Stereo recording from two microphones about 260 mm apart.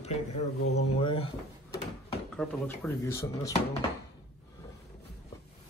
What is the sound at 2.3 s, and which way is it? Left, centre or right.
Speech, centre.